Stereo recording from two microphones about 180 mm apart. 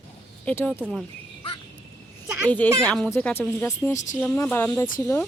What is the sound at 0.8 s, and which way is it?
Speech, centre (ahead or behind).